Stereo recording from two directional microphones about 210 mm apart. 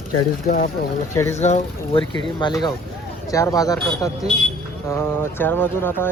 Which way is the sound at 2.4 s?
20° left (ahead or behind).